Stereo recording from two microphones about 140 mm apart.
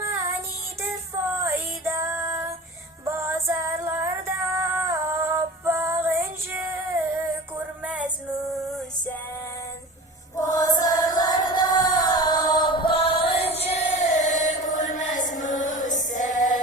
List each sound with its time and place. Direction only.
0.0 s child singing: 20° right (ahead or behind)
1.4 s female singing: 20° right (ahead or behind)
7.9 s music: 10° right (ahead or behind)
10.3 s chant: 25° left (ahead or behind); by 15.3 s 60° left (ahead or behind)
15.4 s music: 65° left (ahead or behind)